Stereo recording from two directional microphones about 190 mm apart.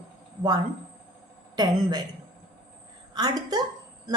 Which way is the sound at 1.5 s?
20° right (ahead or behind).